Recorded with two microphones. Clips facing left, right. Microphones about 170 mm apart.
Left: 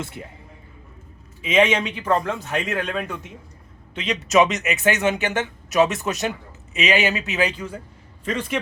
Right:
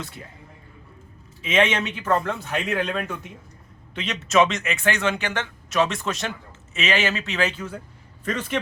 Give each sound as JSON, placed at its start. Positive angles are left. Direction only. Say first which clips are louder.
{"t": 1.4, "sound": "a man's voice", "louder": "left 3 dB", "side_deg": 10}
{"t": 1.8, "sound": "a man's voice", "louder": "left 1 dB", "side_deg": -5}
{"t": 4.3, "sound": "a man's voice", "louder": "left 1 dB", "side_deg": 20}